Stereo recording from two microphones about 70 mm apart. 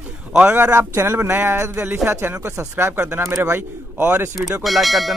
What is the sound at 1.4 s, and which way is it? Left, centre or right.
Speech, right.